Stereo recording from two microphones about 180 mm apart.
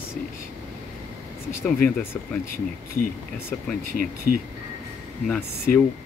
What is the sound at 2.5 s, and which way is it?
Speech, 50° left (ahead or behind).